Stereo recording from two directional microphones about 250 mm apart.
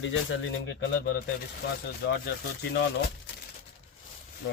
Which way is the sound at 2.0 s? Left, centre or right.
Left.